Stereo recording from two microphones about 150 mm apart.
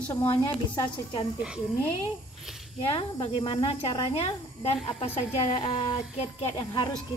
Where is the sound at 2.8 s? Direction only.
35° left (ahead or behind).